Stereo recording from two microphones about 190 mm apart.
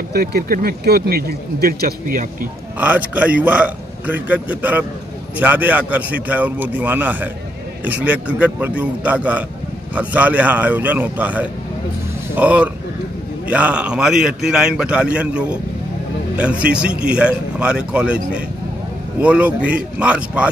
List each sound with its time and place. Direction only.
0.1 s a man's voice: 55° right (ahead or behind)
2.8 s a man's voice: 10° right (ahead or behind)